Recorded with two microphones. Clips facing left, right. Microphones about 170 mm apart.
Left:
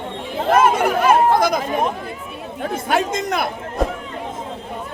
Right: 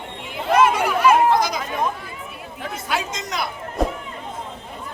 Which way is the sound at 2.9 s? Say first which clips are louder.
Left 7 dB; 55° left (ahead or behind).